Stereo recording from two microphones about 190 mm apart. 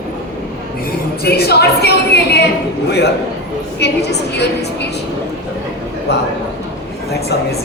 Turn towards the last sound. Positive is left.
turn(degrees=55)  # may be behind; listen again after turning